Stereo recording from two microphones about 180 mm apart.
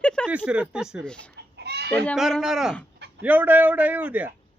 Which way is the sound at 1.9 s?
5° left (ahead or behind).